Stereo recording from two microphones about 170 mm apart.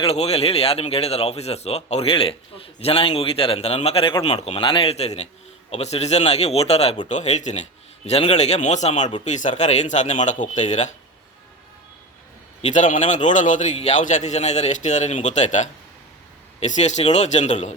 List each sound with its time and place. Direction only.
0.0 s a man's voice: 35° left (ahead or behind)
12.6 s a man's voice: 50° left (ahead or behind)